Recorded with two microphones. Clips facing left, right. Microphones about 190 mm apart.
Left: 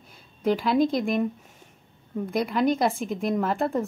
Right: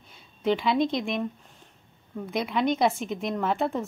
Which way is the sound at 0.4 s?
Centre (ahead or behind).